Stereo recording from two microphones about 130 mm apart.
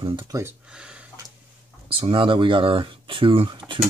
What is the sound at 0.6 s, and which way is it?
Speech, 5° right (ahead or behind).